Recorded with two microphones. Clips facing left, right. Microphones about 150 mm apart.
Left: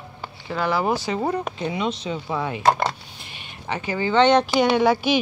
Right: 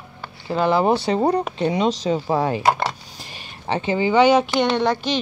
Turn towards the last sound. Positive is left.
turn(degrees=10)  # may be behind; listen again after turning